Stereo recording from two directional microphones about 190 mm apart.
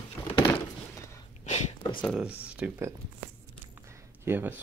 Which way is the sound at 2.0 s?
Centre (ahead or behind).